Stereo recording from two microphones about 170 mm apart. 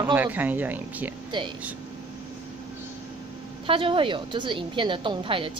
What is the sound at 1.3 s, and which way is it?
Speech, 25° right (ahead or behind).